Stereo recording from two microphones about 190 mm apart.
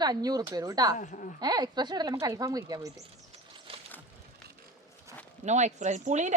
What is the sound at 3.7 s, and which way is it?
Boat, 30° right (ahead or behind).